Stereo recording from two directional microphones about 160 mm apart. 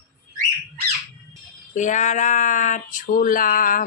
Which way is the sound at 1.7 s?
50° left (ahead or behind).